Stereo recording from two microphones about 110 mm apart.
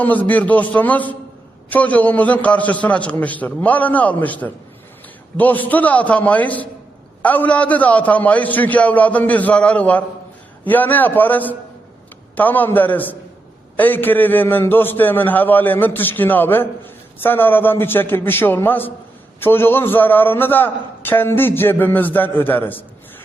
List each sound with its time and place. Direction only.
0.0 s a man's voice: 15° left (ahead or behind)